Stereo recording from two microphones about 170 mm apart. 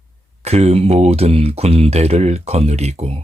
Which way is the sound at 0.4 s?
40° right (ahead or behind).